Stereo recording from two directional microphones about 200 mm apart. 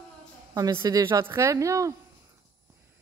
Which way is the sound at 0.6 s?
15° right (ahead or behind).